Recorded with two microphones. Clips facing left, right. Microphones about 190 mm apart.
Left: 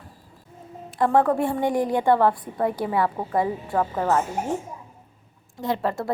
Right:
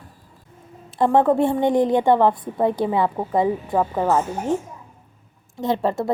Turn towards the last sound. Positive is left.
turn(degrees=-25)  # may be behind; listen again after turning